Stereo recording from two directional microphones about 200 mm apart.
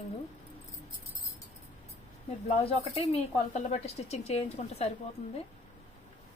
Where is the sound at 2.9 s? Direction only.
35° left (ahead or behind).